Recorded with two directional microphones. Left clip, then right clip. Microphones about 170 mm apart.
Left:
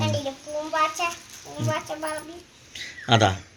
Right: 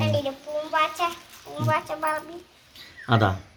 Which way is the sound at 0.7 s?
Centre (ahead or behind).